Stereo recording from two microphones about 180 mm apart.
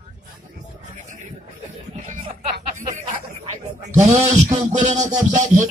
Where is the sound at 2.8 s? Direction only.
45° right (ahead or behind).